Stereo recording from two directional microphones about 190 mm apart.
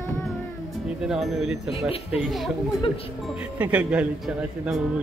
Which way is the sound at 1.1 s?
Centre (ahead or behind).